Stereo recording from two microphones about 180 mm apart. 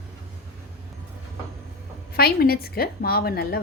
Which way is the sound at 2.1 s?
55° left (ahead or behind).